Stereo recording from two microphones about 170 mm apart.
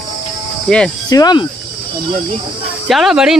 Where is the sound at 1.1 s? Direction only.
25° left (ahead or behind).